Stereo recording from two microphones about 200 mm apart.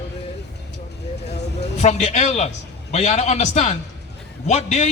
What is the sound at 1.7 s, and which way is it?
A man's voice, 35° left (ahead or behind).